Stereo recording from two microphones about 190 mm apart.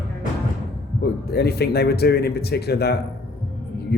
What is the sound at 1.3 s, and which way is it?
Speech, 55° left (ahead or behind).